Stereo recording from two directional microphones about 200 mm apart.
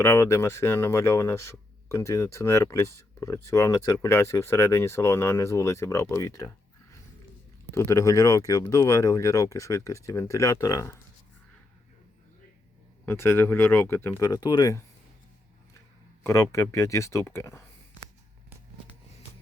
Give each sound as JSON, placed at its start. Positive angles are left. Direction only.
{"t": 0.0, "sound": "speech", "side_deg": 15}
{"t": 7.7, "sound": "speech", "side_deg": 15}
{"t": 13.1, "sound": "speech", "side_deg": 10}
{"t": 16.2, "sound": "speech", "side_deg": 15}